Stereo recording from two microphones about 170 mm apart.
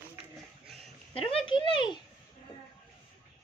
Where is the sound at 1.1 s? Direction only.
35° left (ahead or behind).